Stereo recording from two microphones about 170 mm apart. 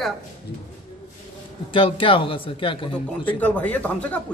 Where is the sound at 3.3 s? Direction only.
10° left (ahead or behind).